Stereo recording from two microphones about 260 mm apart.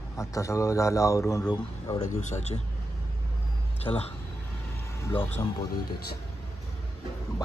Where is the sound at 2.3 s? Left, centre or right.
Left.